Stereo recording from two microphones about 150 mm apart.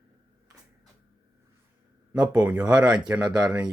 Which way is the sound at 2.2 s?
10° right (ahead or behind).